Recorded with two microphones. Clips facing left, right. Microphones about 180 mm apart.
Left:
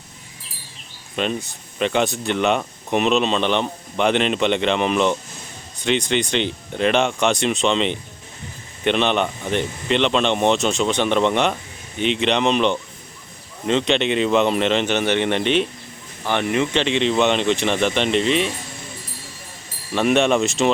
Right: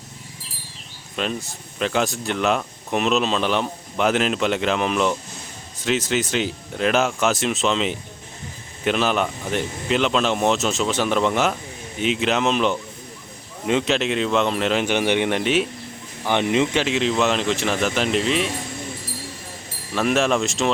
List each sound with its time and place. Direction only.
1.1 s speech: centre (ahead or behind)
16.2 s speech: 15° right (ahead or behind)
16.7 s speech: 5° right (ahead or behind)
19.9 s speech: centre (ahead or behind)